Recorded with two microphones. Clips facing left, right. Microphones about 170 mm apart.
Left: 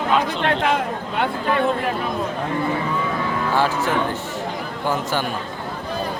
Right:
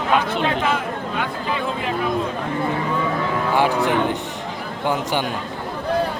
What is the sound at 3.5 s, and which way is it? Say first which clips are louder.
Speech: right 2 dB; 15° right (ahead or behind).